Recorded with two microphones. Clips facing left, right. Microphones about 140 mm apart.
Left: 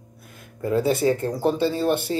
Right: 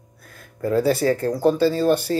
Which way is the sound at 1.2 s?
20° left (ahead or behind).